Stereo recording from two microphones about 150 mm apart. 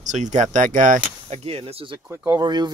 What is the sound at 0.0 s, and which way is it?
Speech, 55° right (ahead or behind).